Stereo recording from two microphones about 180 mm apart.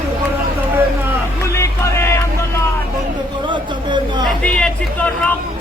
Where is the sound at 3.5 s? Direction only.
25° right (ahead or behind).